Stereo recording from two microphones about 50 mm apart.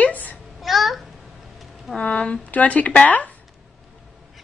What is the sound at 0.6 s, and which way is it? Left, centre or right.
Speech, centre.